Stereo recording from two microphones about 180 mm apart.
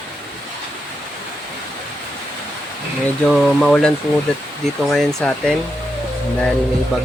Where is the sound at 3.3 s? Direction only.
Centre (ahead or behind).